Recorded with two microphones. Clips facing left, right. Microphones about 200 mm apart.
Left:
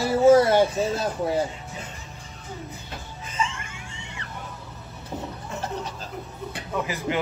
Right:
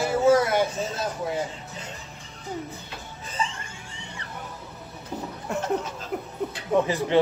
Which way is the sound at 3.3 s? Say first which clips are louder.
Left 2 dB; 35° right (ahead or behind).